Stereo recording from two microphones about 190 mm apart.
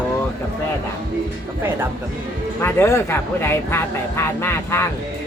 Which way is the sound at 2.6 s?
15° left (ahead or behind).